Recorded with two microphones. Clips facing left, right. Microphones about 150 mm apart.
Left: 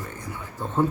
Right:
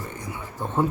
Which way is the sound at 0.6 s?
15° right (ahead or behind).